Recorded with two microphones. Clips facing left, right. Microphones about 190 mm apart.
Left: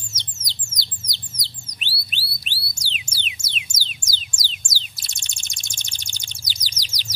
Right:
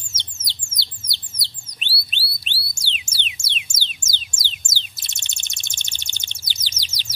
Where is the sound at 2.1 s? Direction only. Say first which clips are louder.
Right 1 dB; 25° right (ahead or behind).